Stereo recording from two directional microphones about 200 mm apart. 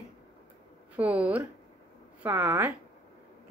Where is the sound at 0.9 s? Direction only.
5° right (ahead or behind).